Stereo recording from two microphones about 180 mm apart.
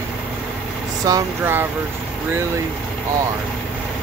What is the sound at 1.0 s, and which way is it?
Speech, 15° right (ahead or behind).